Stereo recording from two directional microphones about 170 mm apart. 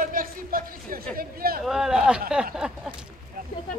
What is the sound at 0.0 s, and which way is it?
Speech, 55° right (ahead or behind).